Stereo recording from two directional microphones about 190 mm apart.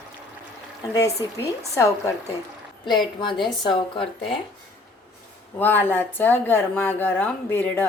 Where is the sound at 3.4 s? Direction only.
25° left (ahead or behind).